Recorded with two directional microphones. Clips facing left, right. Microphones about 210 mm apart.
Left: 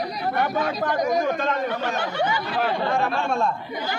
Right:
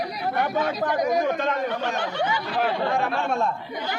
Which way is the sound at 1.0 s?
5° right (ahead or behind).